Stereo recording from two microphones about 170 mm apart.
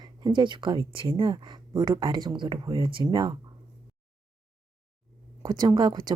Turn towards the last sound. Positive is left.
turn(degrees=-25)  # may be behind; listen again after turning